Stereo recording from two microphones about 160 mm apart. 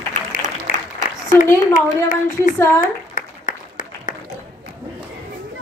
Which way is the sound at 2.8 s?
55° left (ahead or behind).